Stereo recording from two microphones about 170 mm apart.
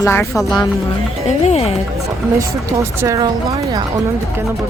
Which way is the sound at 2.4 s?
20° right (ahead or behind).